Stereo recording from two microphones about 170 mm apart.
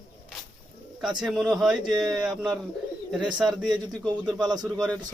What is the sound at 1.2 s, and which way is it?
Speech, 5° right (ahead or behind).